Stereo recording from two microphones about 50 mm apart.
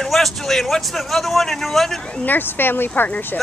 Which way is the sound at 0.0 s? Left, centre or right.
Centre.